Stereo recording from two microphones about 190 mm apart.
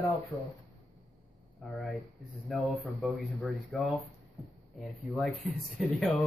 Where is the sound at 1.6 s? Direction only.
Centre (ahead or behind).